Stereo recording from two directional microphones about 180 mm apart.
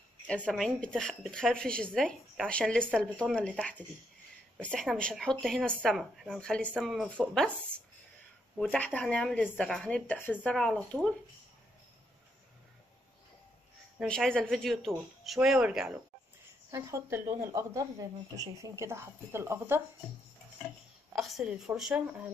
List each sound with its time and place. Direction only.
0.3 s a woman's voice: 5° left (ahead or behind)
8.5 s a woman's voice: 10° left (ahead or behind)
13.9 s a woman's voice: 5° left (ahead or behind)
16.7 s speech: 15° right (ahead or behind)
21.1 s a woman's voice: centre (ahead or behind)